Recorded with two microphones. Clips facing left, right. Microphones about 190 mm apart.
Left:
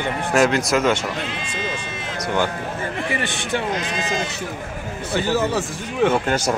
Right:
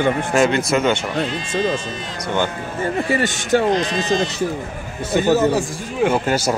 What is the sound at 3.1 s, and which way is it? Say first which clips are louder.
A man's voice: right 8 dB; 45° right (ahead or behind).